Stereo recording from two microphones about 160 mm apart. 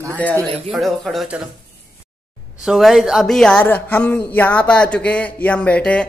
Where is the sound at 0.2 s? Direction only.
10° left (ahead or behind).